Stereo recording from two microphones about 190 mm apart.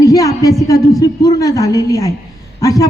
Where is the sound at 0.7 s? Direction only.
20° left (ahead or behind).